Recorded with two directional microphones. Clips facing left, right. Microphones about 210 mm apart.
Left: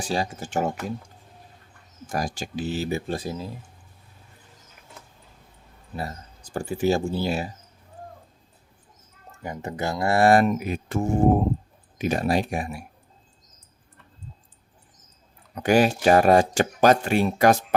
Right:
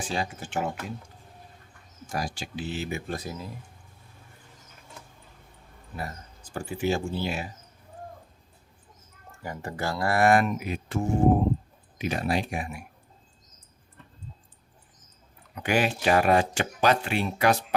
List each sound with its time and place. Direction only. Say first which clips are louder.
0.0 s speech: left 4 dB; 40° left (ahead or behind)
2.1 s speech: left 4 dB; 45° left (ahead or behind); by 3.5 s 30° left (ahead or behind)
6.0 s speech: left 3 dB; 35° left (ahead or behind)
9.4 s speech: left 3 dB; 20° left (ahead or behind); by 12.8 s 40° left (ahead or behind)
15.5 s speech: left 6 dB; 40° left (ahead or behind)